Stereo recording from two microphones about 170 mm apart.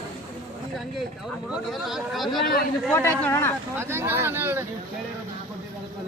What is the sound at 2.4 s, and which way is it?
Speech, 65° left (ahead or behind).